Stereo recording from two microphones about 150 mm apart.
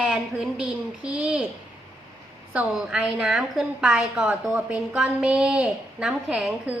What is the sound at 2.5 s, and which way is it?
A woman's voice, 5° right (ahead or behind).